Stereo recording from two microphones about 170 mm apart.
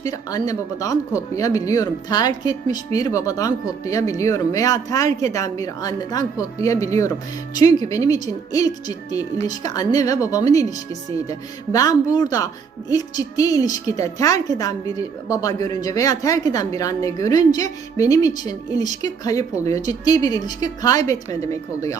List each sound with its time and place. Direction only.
0.0 s a woman's voice: 20° left (ahead or behind)